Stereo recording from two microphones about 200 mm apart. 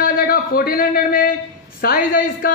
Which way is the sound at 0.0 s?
45° left (ahead or behind).